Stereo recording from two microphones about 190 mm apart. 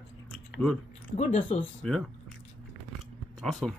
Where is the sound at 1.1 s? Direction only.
35° left (ahead or behind).